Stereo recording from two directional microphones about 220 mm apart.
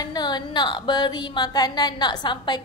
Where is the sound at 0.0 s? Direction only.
20° left (ahead or behind).